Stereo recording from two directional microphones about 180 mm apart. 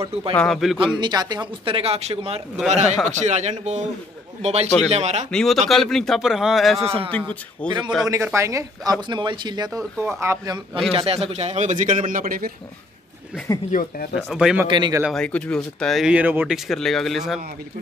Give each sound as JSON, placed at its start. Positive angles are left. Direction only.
{"t": 0.3, "sound": "speech", "side_deg": 5}
{"t": 0.7, "sound": "speech", "side_deg": -25}
{"t": 5.3, "sound": "speech", "side_deg": 0}
{"t": 7.2, "sound": "speech", "side_deg": -25}
{"t": 8.1, "sound": "speech", "side_deg": -15}
{"t": 10.9, "sound": "a man's voice", "side_deg": -30}
{"t": 13.7, "sound": "speech", "side_deg": 50}
{"t": 14.1, "sound": "speech", "side_deg": -5}
{"t": 14.7, "sound": "speech", "side_deg": -25}
{"t": 15.1, "sound": "speech", "side_deg": 5}